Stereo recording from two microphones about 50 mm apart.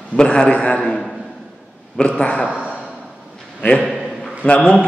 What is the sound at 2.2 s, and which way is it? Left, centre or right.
Speech, left.